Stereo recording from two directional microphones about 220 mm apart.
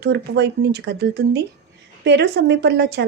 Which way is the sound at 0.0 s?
50° right (ahead or behind).